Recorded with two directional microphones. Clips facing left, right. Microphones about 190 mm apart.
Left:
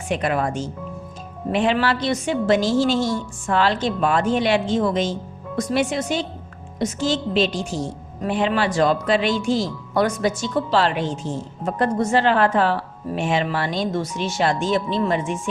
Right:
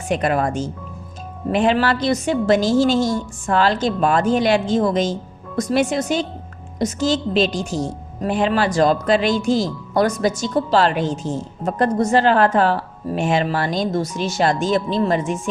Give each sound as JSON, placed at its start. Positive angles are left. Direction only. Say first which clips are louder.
{"t": 0.1, "sound": "a woman's voice", "louder": "right 3 dB", "side_deg": -40}